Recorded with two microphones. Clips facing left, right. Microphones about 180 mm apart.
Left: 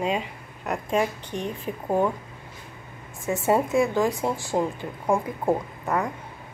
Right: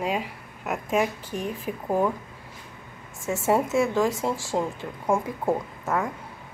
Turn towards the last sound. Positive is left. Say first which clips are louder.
# left 1 dB
turn(degrees=0)  # may be behind; listen again after turning